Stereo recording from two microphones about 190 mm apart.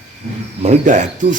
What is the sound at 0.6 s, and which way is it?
Speech, 35° right (ahead or behind).